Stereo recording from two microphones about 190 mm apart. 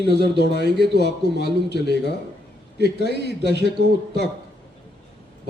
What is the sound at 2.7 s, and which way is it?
A man's voice, 60° right (ahead or behind).